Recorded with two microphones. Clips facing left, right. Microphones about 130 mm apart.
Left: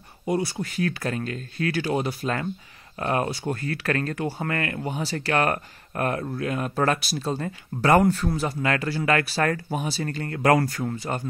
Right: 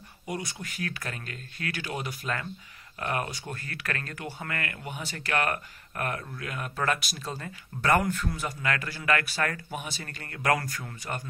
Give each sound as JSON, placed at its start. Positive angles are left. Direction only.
{"t": 0.3, "sound": "speech", "side_deg": 30}